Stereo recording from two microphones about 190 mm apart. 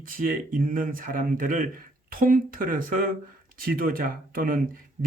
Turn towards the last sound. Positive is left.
turn(degrees=-45)  # may be behind; listen again after turning